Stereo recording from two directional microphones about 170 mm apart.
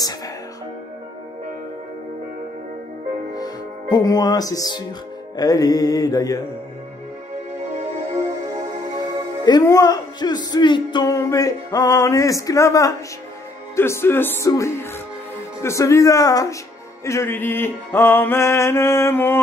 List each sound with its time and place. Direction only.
3.3 s speech: 20° left (ahead or behind)
5.3 s music: 20° left (ahead or behind)
9.4 s music: 25° left (ahead or behind)